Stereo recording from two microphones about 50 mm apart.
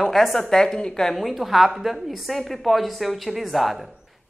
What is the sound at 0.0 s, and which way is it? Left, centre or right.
A woman's voice, centre.